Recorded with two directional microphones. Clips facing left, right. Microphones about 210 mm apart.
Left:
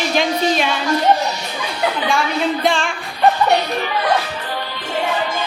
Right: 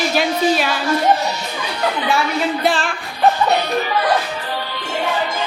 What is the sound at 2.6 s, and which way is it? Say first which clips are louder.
Speech: even; 5° right (ahead or behind).